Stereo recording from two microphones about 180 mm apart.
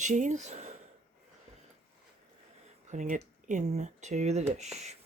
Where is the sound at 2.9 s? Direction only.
40° right (ahead or behind).